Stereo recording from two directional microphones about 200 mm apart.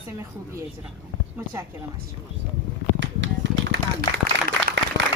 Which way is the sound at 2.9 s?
65° right (ahead or behind).